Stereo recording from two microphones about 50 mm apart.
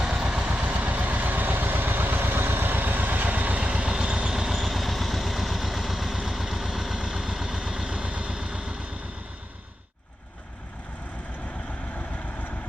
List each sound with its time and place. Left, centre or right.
0.0 s vehicle: centre
3.8 s vehicle: centre
11.9 s vehicle: left